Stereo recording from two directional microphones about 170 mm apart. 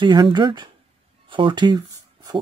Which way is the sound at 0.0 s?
25° right (ahead or behind).